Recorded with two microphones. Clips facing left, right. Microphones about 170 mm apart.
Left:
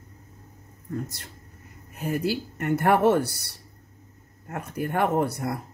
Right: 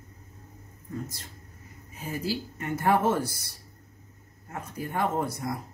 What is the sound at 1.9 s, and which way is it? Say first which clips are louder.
Speech: left 5 dB; 65° left (ahead or behind).